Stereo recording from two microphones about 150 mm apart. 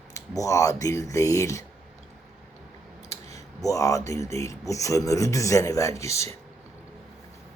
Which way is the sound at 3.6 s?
20° left (ahead or behind).